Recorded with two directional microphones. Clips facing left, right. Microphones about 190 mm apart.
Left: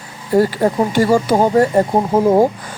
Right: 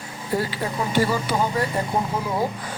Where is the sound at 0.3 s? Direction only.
45° left (ahead or behind).